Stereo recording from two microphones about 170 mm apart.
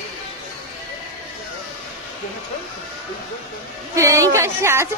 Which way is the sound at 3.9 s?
20° right (ahead or behind).